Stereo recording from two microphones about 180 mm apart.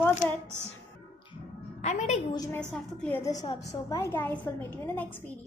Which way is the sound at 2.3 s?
20° left (ahead or behind).